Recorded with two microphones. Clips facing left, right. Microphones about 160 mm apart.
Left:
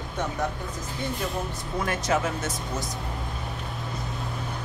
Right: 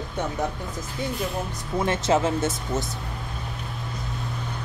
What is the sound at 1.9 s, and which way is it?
Speech, 25° right (ahead or behind).